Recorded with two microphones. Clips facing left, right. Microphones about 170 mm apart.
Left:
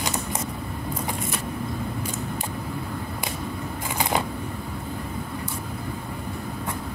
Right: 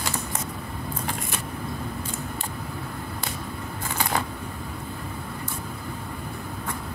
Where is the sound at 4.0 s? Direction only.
20° left (ahead or behind).